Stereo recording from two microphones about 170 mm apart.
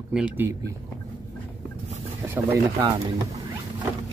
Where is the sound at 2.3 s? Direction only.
20° right (ahead or behind).